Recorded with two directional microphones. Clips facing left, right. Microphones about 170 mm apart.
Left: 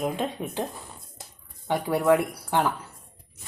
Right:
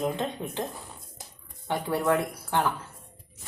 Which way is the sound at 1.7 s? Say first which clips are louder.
Left 4 dB; 15° left (ahead or behind).